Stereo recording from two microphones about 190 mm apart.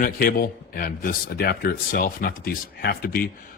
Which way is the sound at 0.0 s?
50° left (ahead or behind).